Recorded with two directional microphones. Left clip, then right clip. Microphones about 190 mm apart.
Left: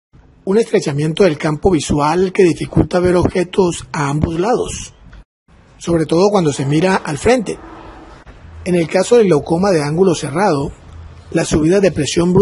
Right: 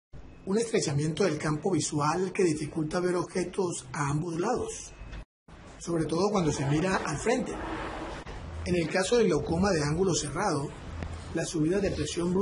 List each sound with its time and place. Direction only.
0.5 s speech: 40° left (ahead or behind)
5.8 s speech: 45° left (ahead or behind)
8.6 s speech: 35° left (ahead or behind)